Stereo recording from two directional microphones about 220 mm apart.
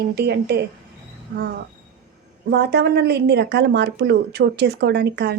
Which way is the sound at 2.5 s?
45° right (ahead or behind).